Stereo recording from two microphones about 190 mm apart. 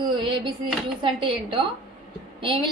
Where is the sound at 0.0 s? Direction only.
25° right (ahead or behind).